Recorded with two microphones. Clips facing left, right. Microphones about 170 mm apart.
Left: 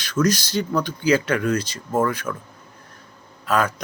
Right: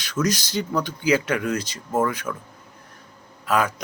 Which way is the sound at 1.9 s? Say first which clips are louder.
Left 1 dB; 5° right (ahead or behind).